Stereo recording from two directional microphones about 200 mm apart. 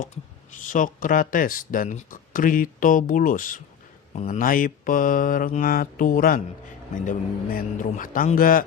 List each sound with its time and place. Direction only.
0.0 s speech: 40° left (ahead or behind)
4.1 s mantra: 40° left (ahead or behind)
7.0 s speech: 40° left (ahead or behind)